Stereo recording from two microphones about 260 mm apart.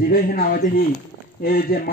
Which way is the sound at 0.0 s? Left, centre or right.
Left.